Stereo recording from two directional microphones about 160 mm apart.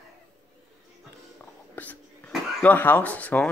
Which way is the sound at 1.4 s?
10° left (ahead or behind).